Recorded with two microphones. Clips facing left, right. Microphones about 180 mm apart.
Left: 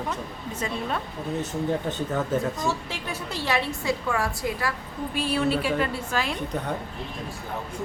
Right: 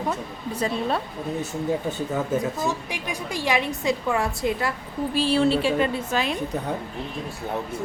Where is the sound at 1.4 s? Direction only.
10° right (ahead or behind).